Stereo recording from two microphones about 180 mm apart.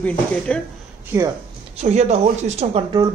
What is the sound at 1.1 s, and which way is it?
Speech, 15° right (ahead or behind).